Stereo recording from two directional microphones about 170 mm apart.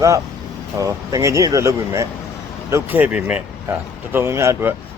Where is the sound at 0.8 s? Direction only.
20° right (ahead or behind).